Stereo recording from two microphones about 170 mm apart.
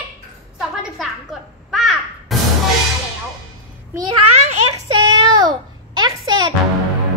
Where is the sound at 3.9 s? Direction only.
25° right (ahead or behind).